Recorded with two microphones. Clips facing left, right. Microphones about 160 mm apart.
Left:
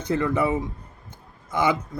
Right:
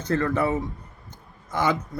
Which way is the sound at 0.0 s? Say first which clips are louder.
Left 1 dB; 10° left (ahead or behind).